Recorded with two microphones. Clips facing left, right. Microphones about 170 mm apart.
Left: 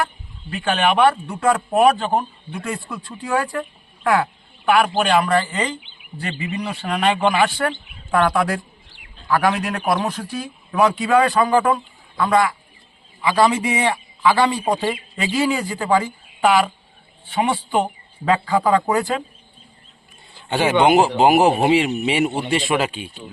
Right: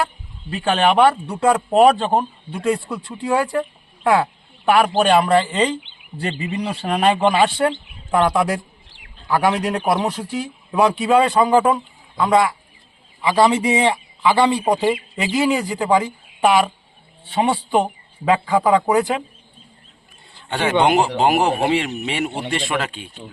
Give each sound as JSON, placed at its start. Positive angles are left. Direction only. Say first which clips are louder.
{"t": 0.5, "sound": "speech", "louder": "right 2 dB", "side_deg": -30}
{"t": 1.3, "sound": "a man's voice", "louder": "right 2 dB", "side_deg": -20}
{"t": 20.5, "sound": "a man's voice", "louder": "left 2 dB", "side_deg": 5}